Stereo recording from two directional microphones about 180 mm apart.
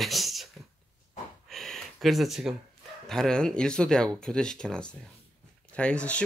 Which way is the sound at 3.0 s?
5° left (ahead or behind).